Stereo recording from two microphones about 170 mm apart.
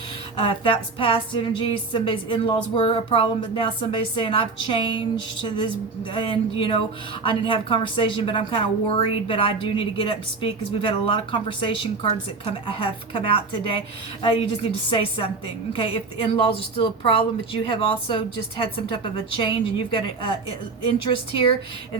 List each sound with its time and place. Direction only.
0.3 s music: 30° left (ahead or behind)
17.7 s a woman's voice: 30° left (ahead or behind)
20.8 s music: 30° left (ahead or behind)